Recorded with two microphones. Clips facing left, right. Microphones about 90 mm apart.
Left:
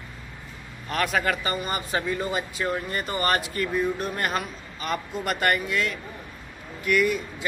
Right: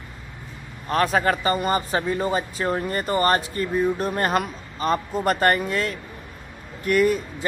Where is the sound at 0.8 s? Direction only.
35° right (ahead or behind).